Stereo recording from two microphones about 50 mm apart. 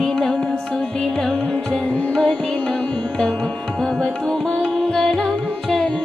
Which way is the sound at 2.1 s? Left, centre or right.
Centre.